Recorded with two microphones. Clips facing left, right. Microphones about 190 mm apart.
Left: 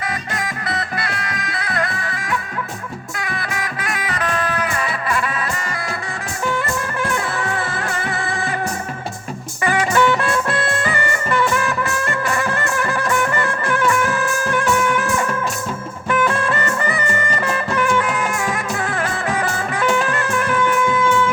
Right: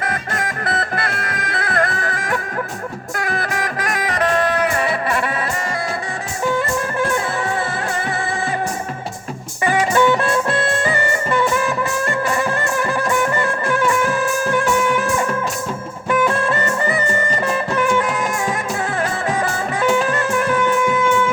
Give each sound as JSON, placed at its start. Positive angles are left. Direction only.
{"t": 0.0, "sound": "music", "side_deg": -50}
{"t": 7.0, "sound": "music", "side_deg": -20}
{"t": 9.6, "sound": "music", "side_deg": -20}